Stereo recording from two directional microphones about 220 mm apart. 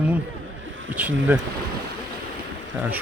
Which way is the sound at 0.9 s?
5° right (ahead or behind).